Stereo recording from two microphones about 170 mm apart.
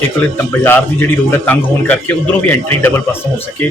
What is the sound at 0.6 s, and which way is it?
A man's voice, 15° left (ahead or behind).